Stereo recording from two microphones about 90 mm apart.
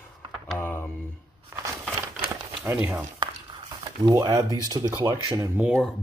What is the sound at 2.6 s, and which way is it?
Speech, 20° right (ahead or behind).